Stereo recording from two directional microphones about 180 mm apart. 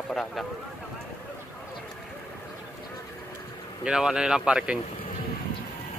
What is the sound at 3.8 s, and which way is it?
Speech, 5° right (ahead or behind).